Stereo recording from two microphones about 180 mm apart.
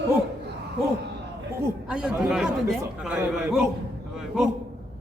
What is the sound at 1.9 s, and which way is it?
Speech, 5° right (ahead or behind).